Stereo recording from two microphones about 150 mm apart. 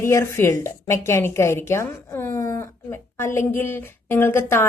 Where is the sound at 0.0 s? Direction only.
20° left (ahead or behind).